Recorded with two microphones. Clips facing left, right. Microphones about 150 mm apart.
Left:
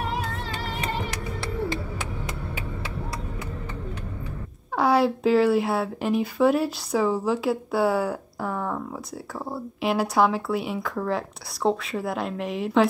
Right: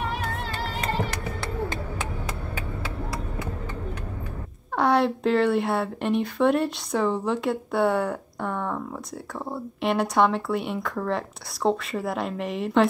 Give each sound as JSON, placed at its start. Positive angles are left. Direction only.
{"t": 0.7, "sound": "music", "side_deg": -40}
{"t": 4.7, "sound": "speech", "side_deg": 0}